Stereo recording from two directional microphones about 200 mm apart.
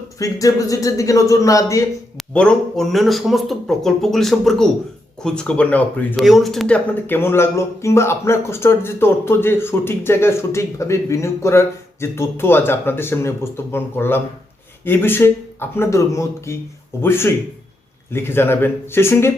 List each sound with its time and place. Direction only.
0.2 s speech: 15° left (ahead or behind)
2.1 s speech: 5° left (ahead or behind)